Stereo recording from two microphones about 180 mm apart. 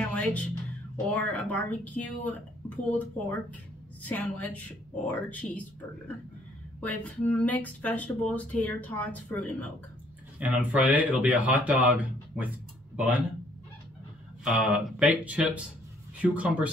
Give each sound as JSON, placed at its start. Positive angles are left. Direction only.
{"t": 0.0, "sound": "music", "side_deg": 10}
{"t": 0.9, "sound": "speech", "side_deg": 10}
{"t": 6.8, "sound": "speech", "side_deg": 10}
{"t": 10.4, "sound": "speech", "side_deg": -10}
{"t": 14.4, "sound": "speech", "side_deg": -5}